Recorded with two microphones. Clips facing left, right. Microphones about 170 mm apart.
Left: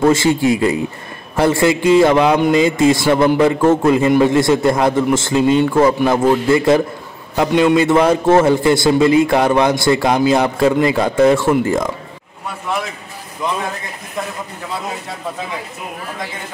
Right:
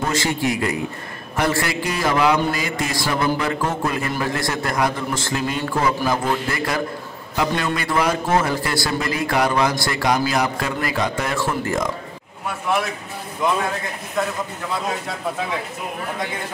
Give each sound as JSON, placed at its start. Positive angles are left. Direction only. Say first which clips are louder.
{"t": 0.1, "sound": "a man's voice", "louder": "left 8 dB", "side_deg": 25}